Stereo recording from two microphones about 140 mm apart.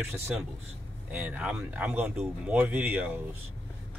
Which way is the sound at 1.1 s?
10° right (ahead or behind).